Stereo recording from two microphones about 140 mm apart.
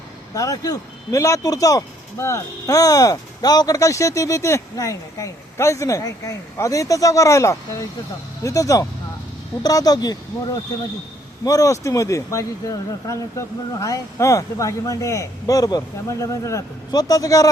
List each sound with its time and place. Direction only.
0.3 s speech: 25° left (ahead or behind)
11.4 s speech: 25° left (ahead or behind)